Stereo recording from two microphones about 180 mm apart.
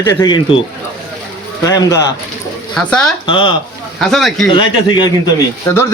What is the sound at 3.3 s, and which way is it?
Speech, 25° left (ahead or behind).